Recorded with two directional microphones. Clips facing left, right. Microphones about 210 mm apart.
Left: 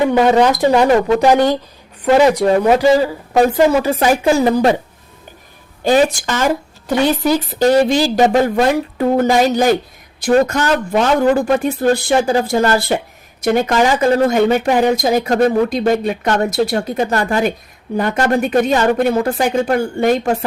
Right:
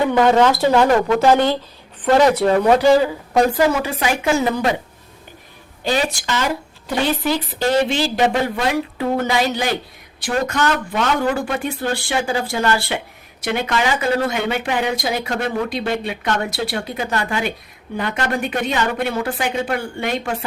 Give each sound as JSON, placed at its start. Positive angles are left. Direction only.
{"t": 0.1, "sound": "speech", "side_deg": 15}
{"t": 3.8, "sound": "speech", "side_deg": 40}
{"t": 5.8, "sound": "speech", "side_deg": 45}